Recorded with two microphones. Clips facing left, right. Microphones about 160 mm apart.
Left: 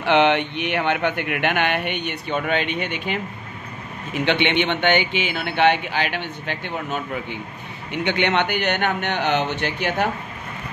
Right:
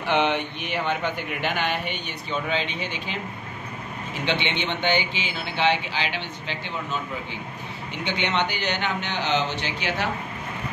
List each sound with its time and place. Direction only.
0.0 s a man's voice: 70° left (ahead or behind); by 10.0 s 55° left (ahead or behind)